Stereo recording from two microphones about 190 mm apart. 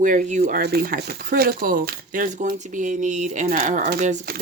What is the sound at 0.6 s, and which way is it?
Speech, 55° right (ahead or behind).